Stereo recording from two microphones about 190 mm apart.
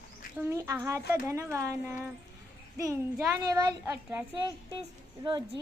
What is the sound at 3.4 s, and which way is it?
Speech, 20° right (ahead or behind).